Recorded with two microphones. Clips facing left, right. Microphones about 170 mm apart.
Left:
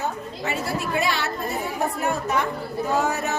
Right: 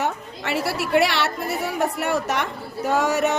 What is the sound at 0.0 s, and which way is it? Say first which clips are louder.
A woman's voice: right 2 dB; 75° right (ahead or behind).